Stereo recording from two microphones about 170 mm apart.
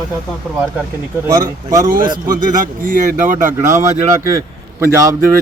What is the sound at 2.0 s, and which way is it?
Speech, 25° right (ahead or behind).